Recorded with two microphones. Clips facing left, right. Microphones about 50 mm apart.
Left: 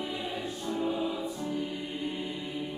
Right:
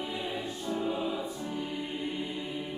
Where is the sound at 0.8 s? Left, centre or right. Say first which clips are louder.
Left 2 dB; centre.